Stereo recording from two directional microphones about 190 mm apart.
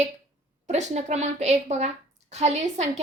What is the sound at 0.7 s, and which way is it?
A woman's voice, 35° right (ahead or behind).